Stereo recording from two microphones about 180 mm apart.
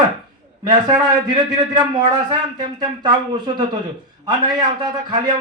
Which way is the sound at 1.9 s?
25° right (ahead or behind).